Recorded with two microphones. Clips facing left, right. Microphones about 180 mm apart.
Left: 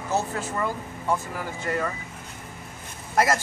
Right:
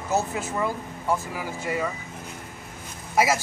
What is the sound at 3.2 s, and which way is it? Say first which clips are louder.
Speech: even; 5° right (ahead or behind).